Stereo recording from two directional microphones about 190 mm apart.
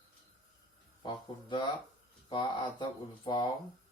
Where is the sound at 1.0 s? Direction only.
25° left (ahead or behind).